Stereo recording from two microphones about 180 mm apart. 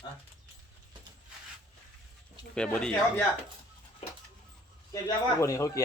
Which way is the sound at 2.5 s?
5° left (ahead or behind).